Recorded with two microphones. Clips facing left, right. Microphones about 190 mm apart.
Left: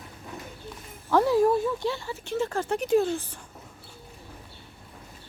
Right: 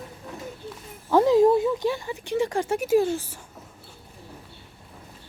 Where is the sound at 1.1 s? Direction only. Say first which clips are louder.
Right 4 dB; 20° right (ahead or behind).